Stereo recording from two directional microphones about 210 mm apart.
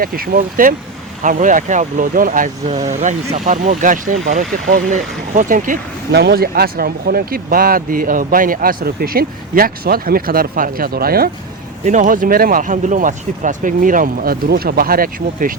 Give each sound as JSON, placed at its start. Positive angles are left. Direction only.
{"t": 0.0, "sound": "speech", "side_deg": -45}